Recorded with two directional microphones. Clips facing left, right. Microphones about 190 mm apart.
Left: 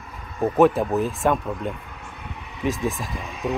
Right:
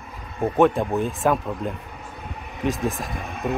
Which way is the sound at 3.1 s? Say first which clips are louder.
Even; 55° right (ahead or behind).